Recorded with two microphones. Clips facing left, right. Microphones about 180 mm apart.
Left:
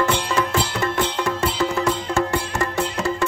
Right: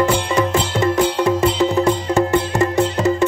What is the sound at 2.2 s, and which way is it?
Music, 20° right (ahead or behind).